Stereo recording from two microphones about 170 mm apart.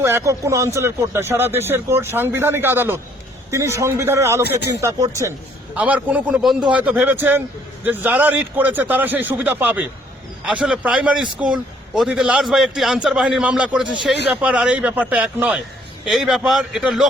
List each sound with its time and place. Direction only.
0.0 s a man's voice: 15° right (ahead or behind)